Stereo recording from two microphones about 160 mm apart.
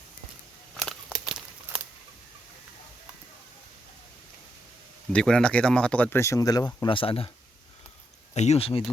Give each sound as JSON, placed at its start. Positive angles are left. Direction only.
{"t": 0.8, "sound": "crumpling", "side_deg": 0}
{"t": 5.1, "sound": "speech", "side_deg": 5}
{"t": 6.8, "sound": "speech", "side_deg": 35}
{"t": 8.3, "sound": "speech", "side_deg": 45}